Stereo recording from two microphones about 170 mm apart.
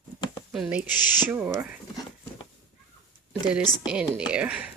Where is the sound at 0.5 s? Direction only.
5° right (ahead or behind).